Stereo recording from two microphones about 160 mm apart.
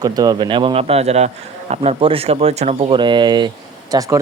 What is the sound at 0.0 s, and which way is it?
Speech, 25° right (ahead or behind).